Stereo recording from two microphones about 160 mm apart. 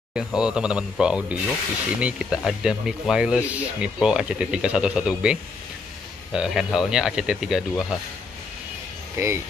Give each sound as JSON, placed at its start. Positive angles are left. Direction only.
{"t": 0.1, "sound": "speech", "side_deg": -5}
{"t": 9.1, "sound": "speech", "side_deg": -20}